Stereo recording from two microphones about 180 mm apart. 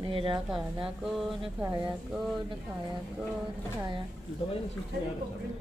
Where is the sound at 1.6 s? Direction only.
20° right (ahead or behind).